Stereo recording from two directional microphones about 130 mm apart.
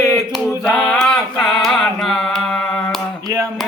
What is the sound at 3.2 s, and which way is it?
Music, 25° right (ahead or behind).